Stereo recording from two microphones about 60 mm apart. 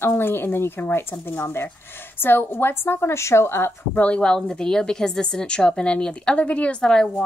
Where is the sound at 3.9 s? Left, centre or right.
Left.